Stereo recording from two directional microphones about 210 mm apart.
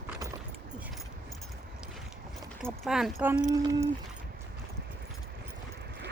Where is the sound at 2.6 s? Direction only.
Centre (ahead or behind).